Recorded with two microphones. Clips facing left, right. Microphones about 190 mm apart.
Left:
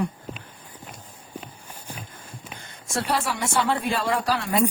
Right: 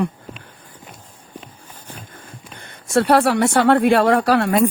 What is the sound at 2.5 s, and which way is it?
Speech, 60° right (ahead or behind).